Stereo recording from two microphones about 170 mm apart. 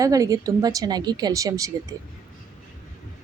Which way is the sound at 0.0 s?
20° right (ahead or behind).